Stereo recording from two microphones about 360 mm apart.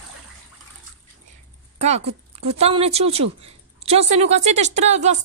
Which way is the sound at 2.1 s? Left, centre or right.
Centre.